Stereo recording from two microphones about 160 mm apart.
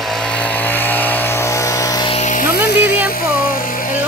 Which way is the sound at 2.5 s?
90° left.